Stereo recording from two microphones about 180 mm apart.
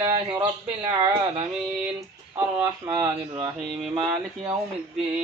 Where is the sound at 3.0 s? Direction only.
20° right (ahead or behind).